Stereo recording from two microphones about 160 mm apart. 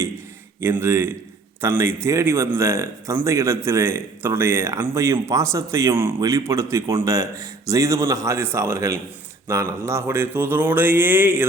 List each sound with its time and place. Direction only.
0.6 s speech: 15° right (ahead or behind)